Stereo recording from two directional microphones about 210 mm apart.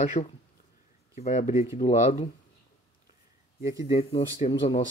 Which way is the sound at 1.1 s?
30° left (ahead or behind).